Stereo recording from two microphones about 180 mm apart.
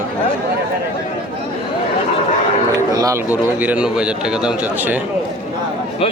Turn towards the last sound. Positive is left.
turn(degrees=-5)  # may be behind; listen again after turning